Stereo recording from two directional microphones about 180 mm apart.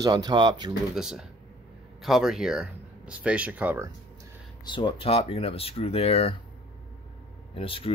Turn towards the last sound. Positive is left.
turn(degrees=30)  # may be behind; listen again after turning